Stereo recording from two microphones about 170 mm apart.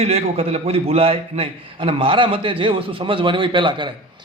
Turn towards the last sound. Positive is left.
turn(degrees=-30)  # may be behind; listen again after turning